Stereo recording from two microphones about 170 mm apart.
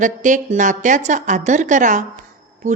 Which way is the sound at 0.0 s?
50° right (ahead or behind).